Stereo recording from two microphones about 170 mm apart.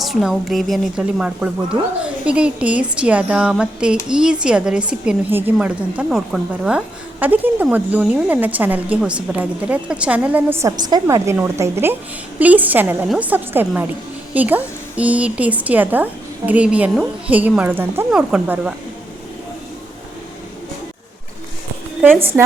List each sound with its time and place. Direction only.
0.0 s a woman's voice: centre (ahead or behind)
22.3 s a woman's voice: 10° right (ahead or behind)